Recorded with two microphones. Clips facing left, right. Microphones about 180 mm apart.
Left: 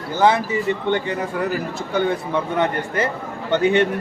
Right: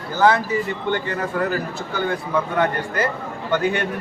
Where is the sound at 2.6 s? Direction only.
25° left (ahead or behind).